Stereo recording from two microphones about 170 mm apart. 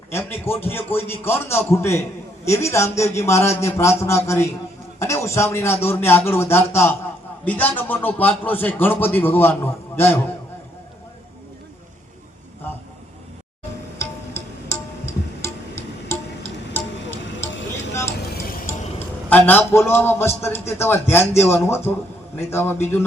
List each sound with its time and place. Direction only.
0.1 s speech: 15° left (ahead or behind)
14.0 s music: 15° left (ahead or behind)
16.7 s music: 10° left (ahead or behind)
18.7 s music: 15° left (ahead or behind)
19.3 s speech: 10° left (ahead or behind)